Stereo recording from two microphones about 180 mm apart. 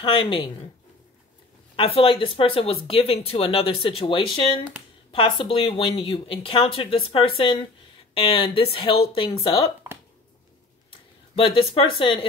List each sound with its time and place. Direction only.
0.0 s speech: 30° left (ahead or behind)
1.8 s speech: 30° left (ahead or behind)
11.3 s speech: 30° left (ahead or behind)